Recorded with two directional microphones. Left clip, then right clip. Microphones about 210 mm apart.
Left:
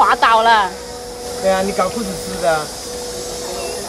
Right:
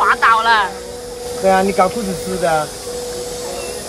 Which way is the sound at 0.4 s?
20° left (ahead or behind).